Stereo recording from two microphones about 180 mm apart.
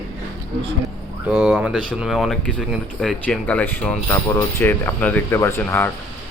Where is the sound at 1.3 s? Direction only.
Centre (ahead or behind).